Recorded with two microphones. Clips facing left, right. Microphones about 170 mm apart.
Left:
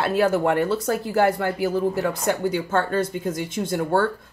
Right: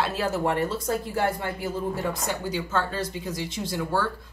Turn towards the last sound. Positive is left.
turn(degrees=55)  # may be behind; listen again after turning